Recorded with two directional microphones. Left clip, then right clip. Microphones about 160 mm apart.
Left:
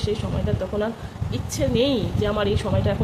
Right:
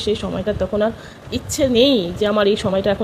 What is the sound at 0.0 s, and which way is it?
Speech, 45° right (ahead or behind).